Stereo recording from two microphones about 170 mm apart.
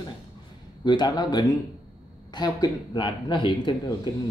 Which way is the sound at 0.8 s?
25° left (ahead or behind).